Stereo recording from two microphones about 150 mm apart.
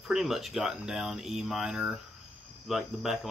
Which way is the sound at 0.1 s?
Centre (ahead or behind).